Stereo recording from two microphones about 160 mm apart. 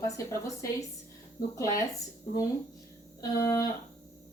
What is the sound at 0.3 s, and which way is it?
Speech, 20° left (ahead or behind).